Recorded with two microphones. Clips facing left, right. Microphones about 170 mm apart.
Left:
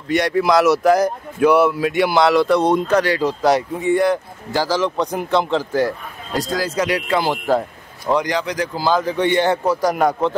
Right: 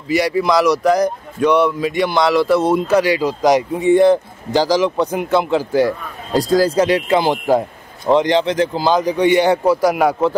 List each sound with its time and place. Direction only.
0.1 s a man's voice: 5° right (ahead or behind)
6.3 s speech: 35° right (ahead or behind); by 10.3 s 10° right (ahead or behind)